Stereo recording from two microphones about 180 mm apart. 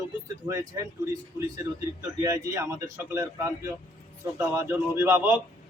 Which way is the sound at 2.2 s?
15° right (ahead or behind).